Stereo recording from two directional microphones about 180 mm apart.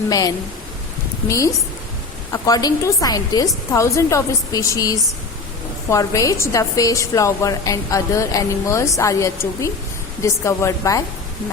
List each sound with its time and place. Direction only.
0.1 s a woman's voice: 20° left (ahead or behind)
2.3 s a woman's voice: 20° left (ahead or behind)